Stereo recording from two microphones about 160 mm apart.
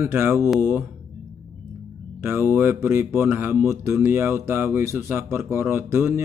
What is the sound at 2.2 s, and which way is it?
Speech, 15° right (ahead or behind).